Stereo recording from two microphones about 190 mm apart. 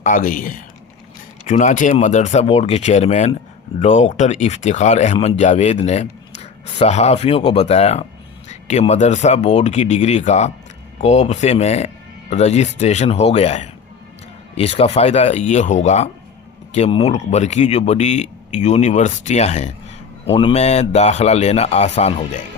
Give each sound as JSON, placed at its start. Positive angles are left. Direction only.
{"t": 0.0, "sound": "a man's voice", "side_deg": 45}